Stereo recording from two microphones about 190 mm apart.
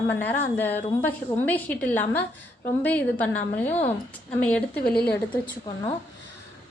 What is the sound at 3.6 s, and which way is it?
Speech, 35° left (ahead or behind).